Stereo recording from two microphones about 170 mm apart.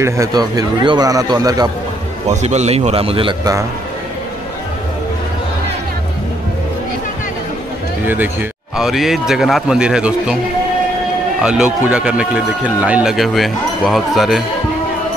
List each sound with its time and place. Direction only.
0.0 s speech: 20° right (ahead or behind)
2.2 s speech: 40° right (ahead or behind)
8.1 s a man's voice: 10° right (ahead or behind)
11.4 s a man's voice: 5° right (ahead or behind)